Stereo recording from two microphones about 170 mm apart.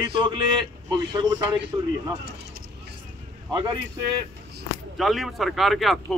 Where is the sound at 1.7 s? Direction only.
25° right (ahead or behind).